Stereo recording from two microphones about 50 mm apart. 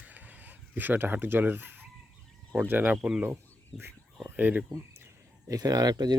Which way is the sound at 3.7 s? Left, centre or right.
Centre.